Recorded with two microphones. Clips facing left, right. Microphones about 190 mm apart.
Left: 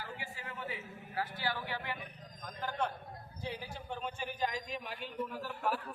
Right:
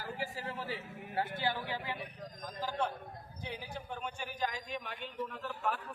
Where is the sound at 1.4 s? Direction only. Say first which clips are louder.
Right 2 dB; 20° right (ahead or behind).